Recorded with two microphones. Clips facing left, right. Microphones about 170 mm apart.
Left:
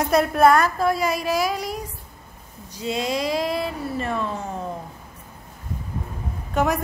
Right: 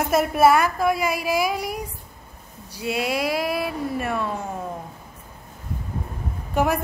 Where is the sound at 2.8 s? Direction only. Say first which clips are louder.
Even; 10° right (ahead or behind).